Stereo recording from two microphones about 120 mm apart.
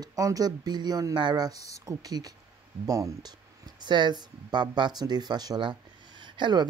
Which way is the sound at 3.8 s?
40° right (ahead or behind).